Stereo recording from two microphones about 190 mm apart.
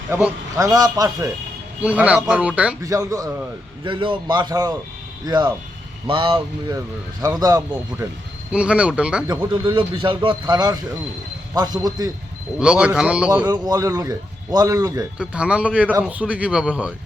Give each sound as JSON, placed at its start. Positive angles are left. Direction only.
{"t": 0.1, "sound": "a man's voice", "side_deg": -10}
{"t": 0.6, "sound": "a man's voice", "side_deg": -20}
{"t": 1.8, "sound": "a man's voice", "side_deg": -5}
{"t": 2.8, "sound": "a man's voice", "side_deg": -20}
{"t": 8.5, "sound": "a man's voice", "side_deg": -5}
{"t": 9.2, "sound": "a man's voice", "side_deg": -20}
{"t": 12.5, "sound": "a man's voice", "side_deg": -5}
{"t": 13.5, "sound": "a man's voice", "side_deg": -20}
{"t": 15.2, "sound": "a man's voice", "side_deg": -5}